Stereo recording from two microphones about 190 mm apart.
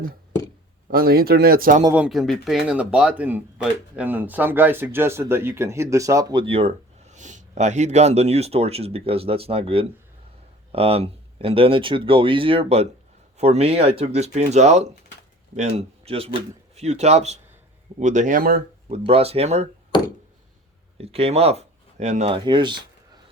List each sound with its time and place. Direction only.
0.9 s speech: 50° right (ahead or behind)
1.8 s speech: 10° right (ahead or behind)
2.0 s speech: centre (ahead or behind); by 18.6 s 50° right (ahead or behind)
18.9 s speech: 35° right (ahead or behind)
19.9 s a sound: 25° left (ahead or behind)
21.0 s speech: 30° right (ahead or behind)